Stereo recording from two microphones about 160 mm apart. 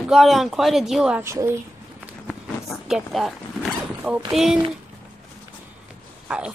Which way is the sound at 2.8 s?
Centre (ahead or behind).